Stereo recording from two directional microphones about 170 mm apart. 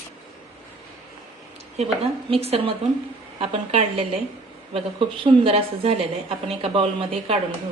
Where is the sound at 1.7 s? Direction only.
35° right (ahead or behind).